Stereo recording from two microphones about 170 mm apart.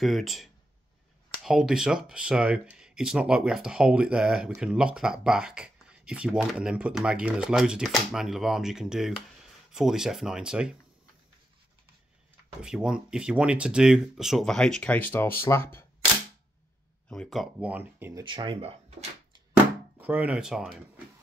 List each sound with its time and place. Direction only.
0.0 s speech: centre (ahead or behind)
12.6 s speech: 5° right (ahead or behind); by 15.8 s 15° left (ahead or behind)
17.1 s speech: centre (ahead or behind)
18.2 s speech: 30° right (ahead or behind)
19.5 s a sound: 10° right (ahead or behind)